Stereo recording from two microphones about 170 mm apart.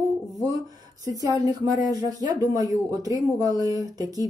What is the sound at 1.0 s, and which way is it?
Speech, 20° right (ahead or behind).